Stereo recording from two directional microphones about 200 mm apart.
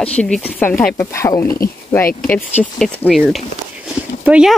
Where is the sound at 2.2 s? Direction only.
5° left (ahead or behind).